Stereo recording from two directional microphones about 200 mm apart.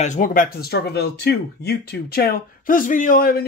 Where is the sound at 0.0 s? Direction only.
40° left (ahead or behind).